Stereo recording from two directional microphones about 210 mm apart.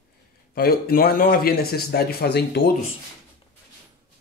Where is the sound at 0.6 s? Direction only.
45° left (ahead or behind).